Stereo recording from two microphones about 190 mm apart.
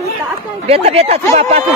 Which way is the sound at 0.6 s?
35° right (ahead or behind).